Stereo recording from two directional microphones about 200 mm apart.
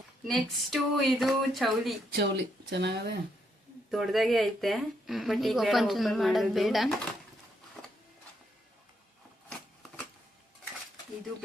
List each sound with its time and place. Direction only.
0.3 s speech: centre (ahead or behind)
2.1 s speech: 55° right (ahead or behind)
3.9 s speech: centre (ahead or behind)